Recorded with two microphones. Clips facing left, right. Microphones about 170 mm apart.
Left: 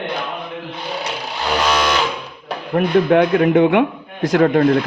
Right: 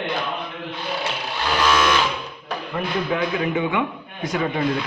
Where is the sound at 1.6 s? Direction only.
20° left (ahead or behind).